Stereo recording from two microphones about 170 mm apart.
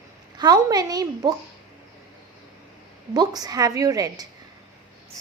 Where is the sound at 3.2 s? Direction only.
20° right (ahead or behind).